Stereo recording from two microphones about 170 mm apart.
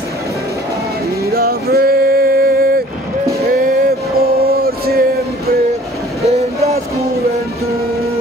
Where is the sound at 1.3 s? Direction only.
65° right (ahead or behind).